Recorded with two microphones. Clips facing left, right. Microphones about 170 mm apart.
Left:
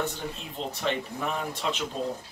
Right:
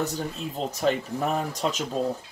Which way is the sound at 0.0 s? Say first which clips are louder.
Right 3 dB; 40° right (ahead or behind).